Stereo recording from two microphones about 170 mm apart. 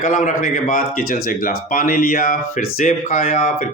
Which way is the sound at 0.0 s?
45° left (ahead or behind).